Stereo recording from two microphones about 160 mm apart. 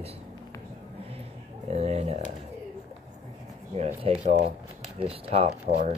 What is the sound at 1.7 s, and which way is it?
Speech, 40° right (ahead or behind).